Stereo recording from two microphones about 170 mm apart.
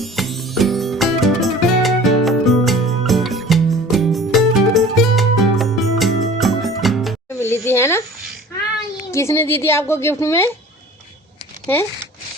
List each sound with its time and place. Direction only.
0.0 s music: centre (ahead or behind)
7.3 s a sound: 15° left (ahead or behind)
9.1 s a woman's voice: 15° left (ahead or behind)
11.6 s speech: 10° left (ahead or behind)